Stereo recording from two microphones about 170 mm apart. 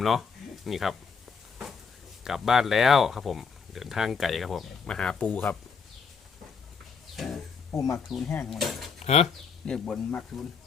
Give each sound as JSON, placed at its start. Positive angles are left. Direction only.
{"t": 0.0, "sound": "speech", "side_deg": 0}
{"t": 2.2, "sound": "speech", "side_deg": 0}
{"t": 7.7, "sound": "speech", "side_deg": 20}
{"t": 7.9, "sound": "speech", "side_deg": 0}
{"t": 9.0, "sound": "speech", "side_deg": 40}
{"t": 9.6, "sound": "speech", "side_deg": 5}